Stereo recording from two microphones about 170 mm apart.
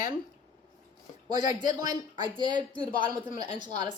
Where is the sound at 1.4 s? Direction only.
25° right (ahead or behind).